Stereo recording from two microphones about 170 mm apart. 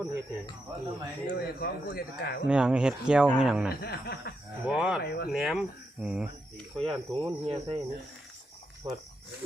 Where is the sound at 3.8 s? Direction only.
65° left (ahead or behind).